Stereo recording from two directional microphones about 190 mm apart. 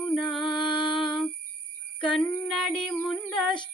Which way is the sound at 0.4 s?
25° left (ahead or behind).